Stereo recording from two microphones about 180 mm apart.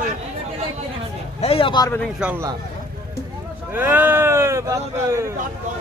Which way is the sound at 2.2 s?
10° right (ahead or behind).